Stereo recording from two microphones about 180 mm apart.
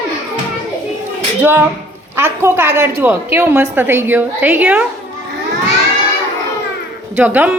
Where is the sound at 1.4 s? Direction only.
10° right (ahead or behind).